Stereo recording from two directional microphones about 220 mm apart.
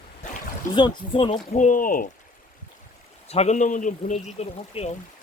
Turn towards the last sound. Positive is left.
turn(degrees=30)  # may be behind; listen again after turning